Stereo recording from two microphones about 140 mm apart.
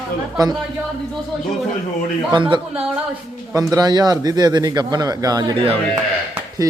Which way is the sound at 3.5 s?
25° right (ahead or behind).